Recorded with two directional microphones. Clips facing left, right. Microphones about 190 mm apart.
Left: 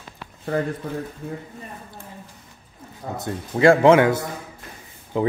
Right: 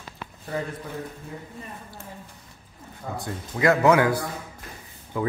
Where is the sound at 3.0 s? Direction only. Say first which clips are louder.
Left 4 dB; 35° left (ahead or behind).